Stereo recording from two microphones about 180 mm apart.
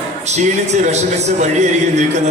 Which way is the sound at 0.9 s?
40° right (ahead or behind).